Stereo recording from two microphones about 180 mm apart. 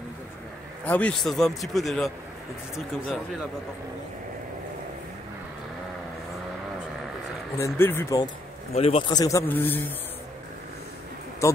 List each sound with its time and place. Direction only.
0.8 s a man's voice: 10° left (ahead or behind)
7.5 s speech: 15° left (ahead or behind)
8.7 s speech: 35° left (ahead or behind)
9.1 s speech: 20° left (ahead or behind)